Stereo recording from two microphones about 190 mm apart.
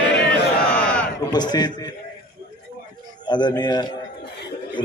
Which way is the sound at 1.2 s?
20° left (ahead or behind).